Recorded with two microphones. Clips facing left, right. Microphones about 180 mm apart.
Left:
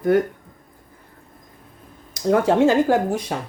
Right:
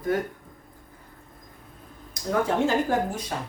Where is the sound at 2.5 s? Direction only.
90° left.